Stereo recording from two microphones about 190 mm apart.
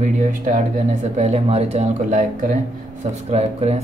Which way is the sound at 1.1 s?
35° right (ahead or behind).